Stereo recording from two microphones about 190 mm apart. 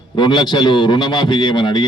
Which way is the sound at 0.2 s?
25° left (ahead or behind).